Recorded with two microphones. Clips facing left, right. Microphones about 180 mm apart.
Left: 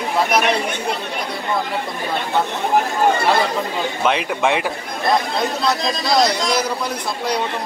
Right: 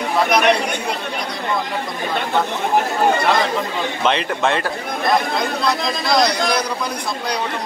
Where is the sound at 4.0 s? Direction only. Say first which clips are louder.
Even; 10° left (ahead or behind).